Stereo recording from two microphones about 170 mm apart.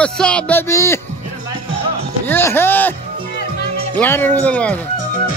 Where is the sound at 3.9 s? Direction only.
10° left (ahead or behind).